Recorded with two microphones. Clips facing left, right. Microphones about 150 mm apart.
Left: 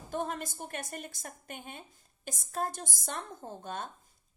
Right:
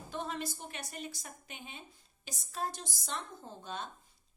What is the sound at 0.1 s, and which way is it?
A woman's voice, 45° left (ahead or behind).